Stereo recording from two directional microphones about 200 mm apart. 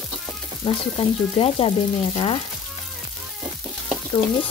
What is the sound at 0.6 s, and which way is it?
Speech, 25° left (ahead or behind).